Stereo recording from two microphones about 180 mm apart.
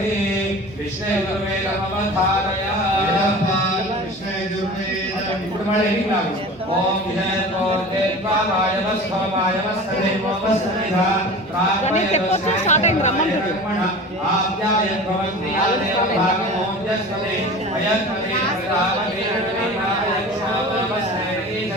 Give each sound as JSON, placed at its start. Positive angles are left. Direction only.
{"t": 11.9, "sound": "speech", "side_deg": 40}